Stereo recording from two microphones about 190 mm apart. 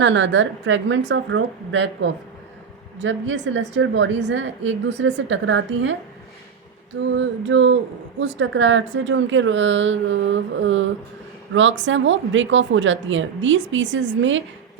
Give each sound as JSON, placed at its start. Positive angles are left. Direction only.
{"t": 0.0, "sound": "a woman's voice", "side_deg": -75}
{"t": 7.2, "sound": "a woman's voice", "side_deg": -75}